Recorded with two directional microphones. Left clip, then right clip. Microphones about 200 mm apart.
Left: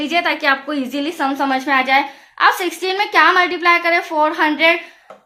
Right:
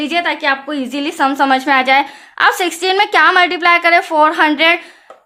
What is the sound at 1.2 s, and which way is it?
A woman's voice, 45° right (ahead or behind).